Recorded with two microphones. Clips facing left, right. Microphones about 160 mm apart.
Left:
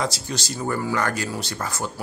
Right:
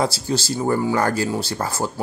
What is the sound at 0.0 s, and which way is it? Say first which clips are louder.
Speech: right 6 dB; 30° right (ahead or behind).